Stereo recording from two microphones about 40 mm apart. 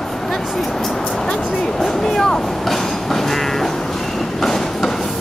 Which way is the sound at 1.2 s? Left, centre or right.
Centre.